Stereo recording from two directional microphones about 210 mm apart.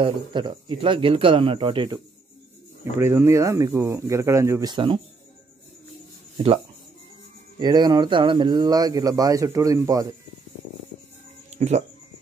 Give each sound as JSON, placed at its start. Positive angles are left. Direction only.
{"t": 0.0, "sound": "speech", "side_deg": -20}
{"t": 2.8, "sound": "speech", "side_deg": -10}
{"t": 6.3, "sound": "speech", "side_deg": -25}
{"t": 11.5, "sound": "music", "side_deg": -30}